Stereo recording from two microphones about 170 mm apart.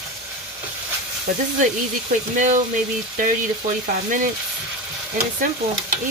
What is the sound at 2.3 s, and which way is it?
Speech, 50° right (ahead or behind).